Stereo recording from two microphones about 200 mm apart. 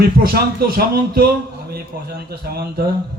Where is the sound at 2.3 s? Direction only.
50° right (ahead or behind).